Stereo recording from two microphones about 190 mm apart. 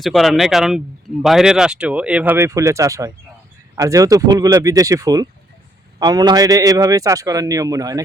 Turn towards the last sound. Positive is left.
turn(degrees=-20)  # may be behind; listen again after turning